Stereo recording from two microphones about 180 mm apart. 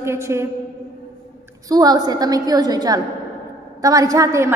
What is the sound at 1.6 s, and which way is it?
A woman's voice, 20° right (ahead or behind).